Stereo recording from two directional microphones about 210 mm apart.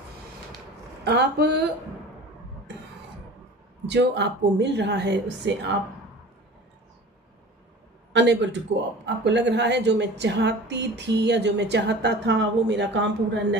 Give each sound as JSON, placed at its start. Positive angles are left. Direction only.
{"t": 1.0, "sound": "speech", "side_deg": -50}
{"t": 3.8, "sound": "a woman's voice", "side_deg": -55}
{"t": 8.1, "sound": "a woman's voice", "side_deg": -55}